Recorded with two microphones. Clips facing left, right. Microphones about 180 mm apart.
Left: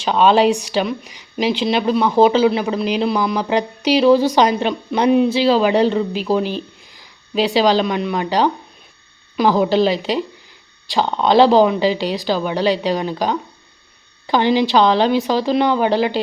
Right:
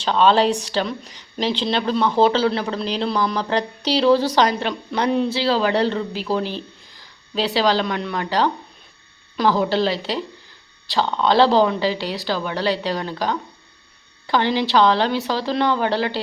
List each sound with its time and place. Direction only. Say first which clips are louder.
0.0 s speech: left 3 dB; 15° left (ahead or behind)